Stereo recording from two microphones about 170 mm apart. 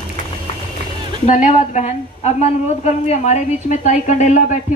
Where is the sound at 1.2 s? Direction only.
45° left (ahead or behind).